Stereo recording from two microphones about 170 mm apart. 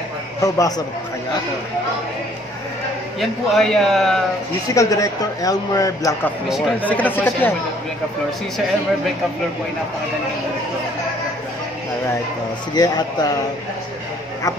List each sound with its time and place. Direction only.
0.4 s a man's voice: 20° left (ahead or behind)
3.2 s a man's voice: centre (ahead or behind)
4.7 s a man's voice: 20° left (ahead or behind)
6.8 s speech: 10° left (ahead or behind)
12.7 s a man's voice: 25° left (ahead or behind)